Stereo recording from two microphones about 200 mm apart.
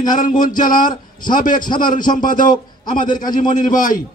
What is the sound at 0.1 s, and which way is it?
A man's voice, 40° left (ahead or behind).